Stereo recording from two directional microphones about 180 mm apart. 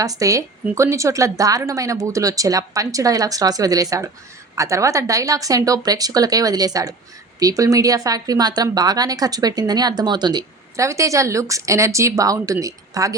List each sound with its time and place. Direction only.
0.0 s speech: 20° right (ahead or behind)